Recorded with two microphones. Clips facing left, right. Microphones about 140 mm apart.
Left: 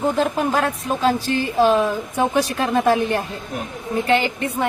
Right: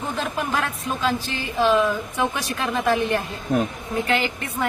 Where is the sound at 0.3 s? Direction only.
30° left (ahead or behind).